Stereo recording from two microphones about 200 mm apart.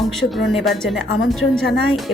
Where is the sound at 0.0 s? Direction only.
Centre (ahead or behind).